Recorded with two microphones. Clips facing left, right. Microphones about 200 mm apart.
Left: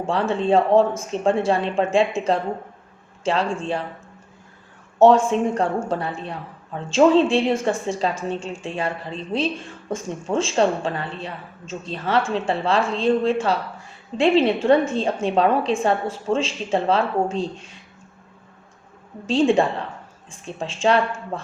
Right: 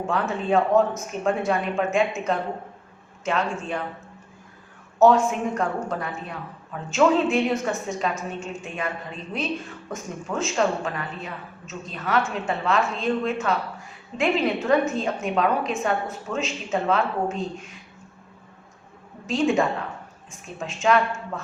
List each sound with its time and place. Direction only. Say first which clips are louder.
0.0 s a woman's voice: left 4 dB; 30° left (ahead or behind)
4.9 s a woman's voice: left 3 dB; 30° left (ahead or behind)
19.3 s a woman's voice: left 4 dB; 30° left (ahead or behind)